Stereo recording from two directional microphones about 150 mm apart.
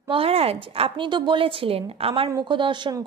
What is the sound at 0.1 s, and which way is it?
Speech, 40° right (ahead or behind).